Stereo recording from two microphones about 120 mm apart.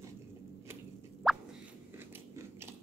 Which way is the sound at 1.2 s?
5° right (ahead or behind).